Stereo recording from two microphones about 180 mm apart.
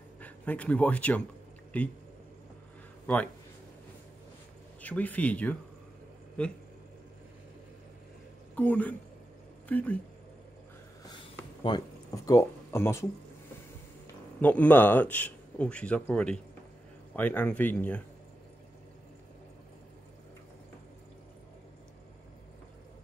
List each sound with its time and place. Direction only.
0.2 s a man's voice: 10° left (ahead or behind)
4.8 s a man's voice: 10° left (ahead or behind)
8.5 s a man's voice: 10° left (ahead or behind)
11.1 s a sound: 25° left (ahead or behind)
14.4 s a man's voice: 10° left (ahead or behind)